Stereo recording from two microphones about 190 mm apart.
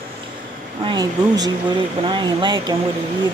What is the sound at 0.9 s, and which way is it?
Speech, 20° right (ahead or behind).